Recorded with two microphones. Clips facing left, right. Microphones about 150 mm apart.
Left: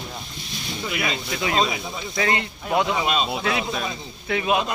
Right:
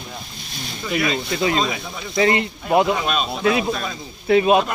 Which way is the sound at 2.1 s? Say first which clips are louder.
Right 6 dB; 25° right (ahead or behind).